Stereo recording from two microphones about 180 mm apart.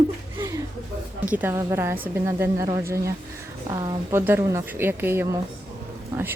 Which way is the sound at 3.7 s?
20° right (ahead or behind).